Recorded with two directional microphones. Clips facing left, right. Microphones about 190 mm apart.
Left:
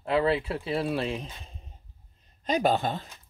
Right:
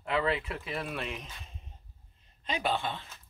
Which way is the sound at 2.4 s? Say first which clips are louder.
Left 7 dB; 40° left (ahead or behind).